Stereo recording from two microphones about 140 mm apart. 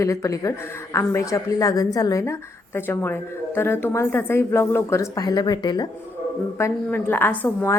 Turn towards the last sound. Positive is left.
turn(degrees=15)  # may be behind; listen again after turning